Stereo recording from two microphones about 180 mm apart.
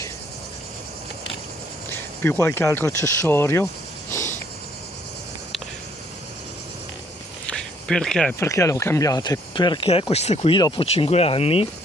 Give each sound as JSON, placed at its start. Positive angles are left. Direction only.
{"t": 2.4, "sound": "speech", "side_deg": 15}
{"t": 4.1, "sound": "cricket", "side_deg": 15}
{"t": 7.4, "sound": "a sound", "side_deg": 5}
{"t": 8.4, "sound": "speech", "side_deg": 15}